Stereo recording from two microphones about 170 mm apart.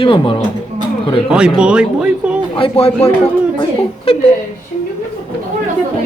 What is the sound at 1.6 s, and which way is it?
Speech, 5° right (ahead or behind).